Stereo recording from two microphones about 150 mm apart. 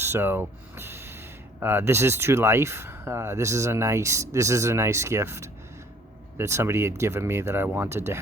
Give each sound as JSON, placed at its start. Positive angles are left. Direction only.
{"t": 0.0, "sound": "speech", "side_deg": -15}